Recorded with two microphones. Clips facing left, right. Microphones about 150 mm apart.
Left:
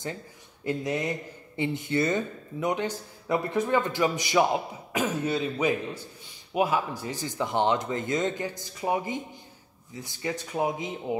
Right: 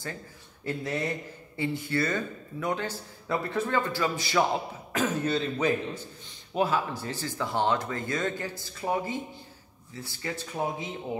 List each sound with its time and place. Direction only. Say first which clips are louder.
0.7 s speech: left 2 dB; 15° left (ahead or behind)